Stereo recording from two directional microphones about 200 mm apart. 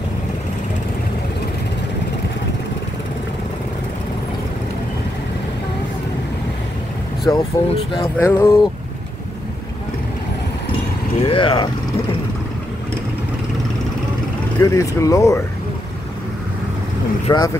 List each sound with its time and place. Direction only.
7.3 s speech: 15° left (ahead or behind)
8.2 s speech: 10° left (ahead or behind)
11.2 s speech: 25° left (ahead or behind)
14.6 s speech: 15° left (ahead or behind)
17.3 s speech: 20° left (ahead or behind)